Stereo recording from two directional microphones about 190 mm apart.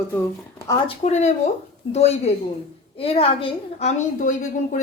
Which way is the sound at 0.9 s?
35° left (ahead or behind).